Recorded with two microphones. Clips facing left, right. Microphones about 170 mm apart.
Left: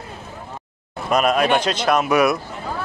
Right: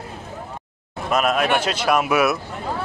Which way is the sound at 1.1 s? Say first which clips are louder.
Left 2 dB; centre (ahead or behind).